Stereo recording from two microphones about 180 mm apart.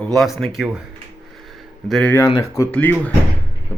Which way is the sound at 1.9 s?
5° left (ahead or behind).